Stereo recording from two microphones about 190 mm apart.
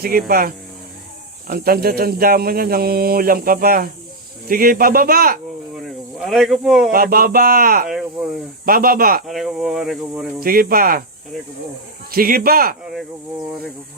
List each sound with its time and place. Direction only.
0.0 s speech: 50° right (ahead or behind)
5.8 s cricket: centre (ahead or behind)
6.9 s speech: 50° right (ahead or behind)
7.9 s speech: centre (ahead or behind)
8.6 s speech: 50° right (ahead or behind)
9.2 s speech: centre (ahead or behind)
10.4 s speech: 50° right (ahead or behind)
12.1 s speech: 50° right (ahead or behind)
12.8 s speech: centre (ahead or behind)